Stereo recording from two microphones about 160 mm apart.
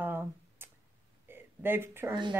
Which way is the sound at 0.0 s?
15° right (ahead or behind).